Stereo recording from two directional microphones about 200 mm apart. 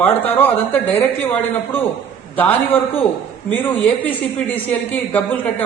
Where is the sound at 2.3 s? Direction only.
10° left (ahead or behind).